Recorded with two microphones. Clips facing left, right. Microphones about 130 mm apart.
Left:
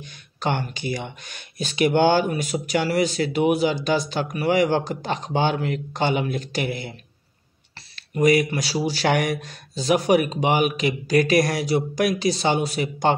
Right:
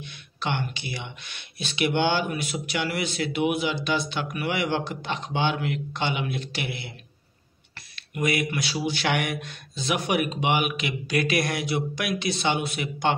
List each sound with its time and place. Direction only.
0.0 s speech: 40° left (ahead or behind)
7.9 s speech: 40° left (ahead or behind)